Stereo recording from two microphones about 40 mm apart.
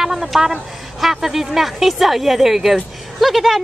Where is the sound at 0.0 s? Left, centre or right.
Centre.